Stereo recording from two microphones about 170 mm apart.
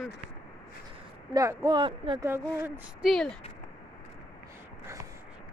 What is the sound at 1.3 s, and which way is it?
Speech, 20° right (ahead or behind).